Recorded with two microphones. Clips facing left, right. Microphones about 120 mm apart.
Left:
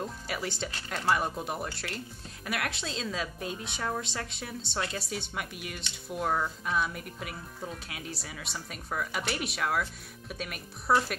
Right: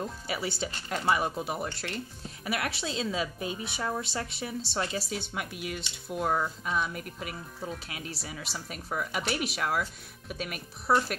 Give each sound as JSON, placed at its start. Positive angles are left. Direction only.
{"t": 0.0, "sound": "speech", "side_deg": -5}